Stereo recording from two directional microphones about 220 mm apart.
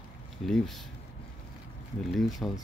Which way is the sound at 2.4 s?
5° left (ahead or behind).